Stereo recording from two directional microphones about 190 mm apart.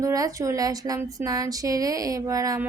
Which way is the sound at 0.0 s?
15° right (ahead or behind).